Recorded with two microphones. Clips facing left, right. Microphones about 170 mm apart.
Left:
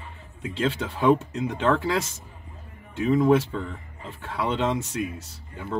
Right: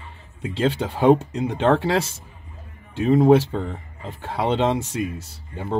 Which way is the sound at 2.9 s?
30° right (ahead or behind).